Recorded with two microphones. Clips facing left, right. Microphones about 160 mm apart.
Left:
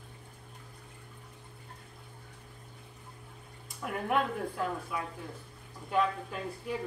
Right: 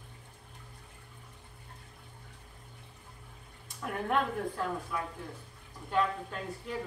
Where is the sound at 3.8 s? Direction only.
10° left (ahead or behind).